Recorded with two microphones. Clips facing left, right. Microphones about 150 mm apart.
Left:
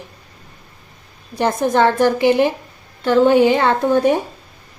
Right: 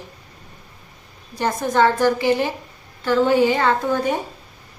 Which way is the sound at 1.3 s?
60° left (ahead or behind).